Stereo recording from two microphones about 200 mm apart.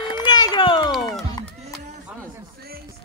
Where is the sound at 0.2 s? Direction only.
20° left (ahead or behind).